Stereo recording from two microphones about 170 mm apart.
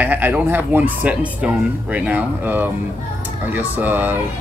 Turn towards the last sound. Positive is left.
turn(degrees=-10)  # may be behind; listen again after turning